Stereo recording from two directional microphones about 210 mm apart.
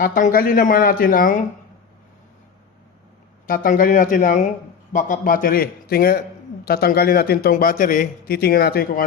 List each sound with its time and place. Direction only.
0.0 s speech: 40° left (ahead or behind)
3.4 s a man's voice: 40° left (ahead or behind)